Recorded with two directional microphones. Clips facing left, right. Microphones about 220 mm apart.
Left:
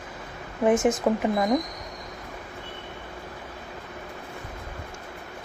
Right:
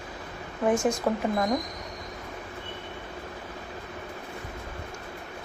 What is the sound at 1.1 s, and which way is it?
Speech, 20° left (ahead or behind).